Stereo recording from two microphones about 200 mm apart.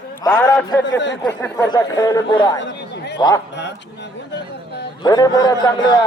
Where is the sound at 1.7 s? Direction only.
20° left (ahead or behind).